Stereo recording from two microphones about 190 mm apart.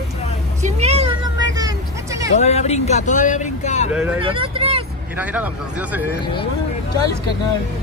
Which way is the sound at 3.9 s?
5° right (ahead or behind).